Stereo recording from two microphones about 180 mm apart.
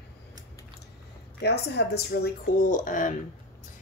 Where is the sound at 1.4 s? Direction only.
65° left (ahead or behind); by 3.1 s 45° left (ahead or behind).